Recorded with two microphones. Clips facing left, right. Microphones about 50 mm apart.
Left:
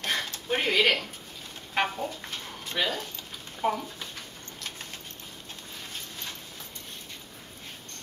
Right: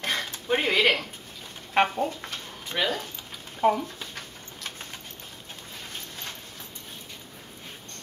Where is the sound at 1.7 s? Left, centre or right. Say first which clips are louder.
Right 5 dB; right.